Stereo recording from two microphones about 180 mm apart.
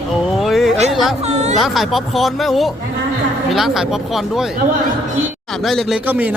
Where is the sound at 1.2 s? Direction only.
35° right (ahead or behind).